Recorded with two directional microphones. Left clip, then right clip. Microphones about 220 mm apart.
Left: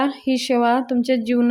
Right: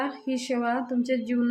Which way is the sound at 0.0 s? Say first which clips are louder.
Left 9 dB; 35° left (ahead or behind).